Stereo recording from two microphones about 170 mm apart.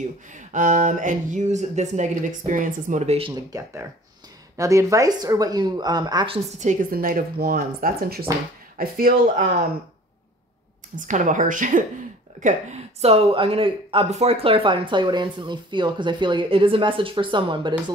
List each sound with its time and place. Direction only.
0.3 s speech: 45° right (ahead or behind)
3.2 s speech: 30° right (ahead or behind)
4.6 s speech: 20° right (ahead or behind)
6.6 s speech: 50° right (ahead or behind)
11.0 s speech: 50° right (ahead or behind); by 17.9 s 30° right (ahead or behind)